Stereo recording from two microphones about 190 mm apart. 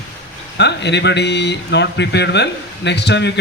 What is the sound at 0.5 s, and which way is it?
Speech, 65° left (ahead or behind).